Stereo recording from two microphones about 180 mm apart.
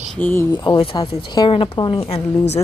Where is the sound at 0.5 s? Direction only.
25° left (ahead or behind).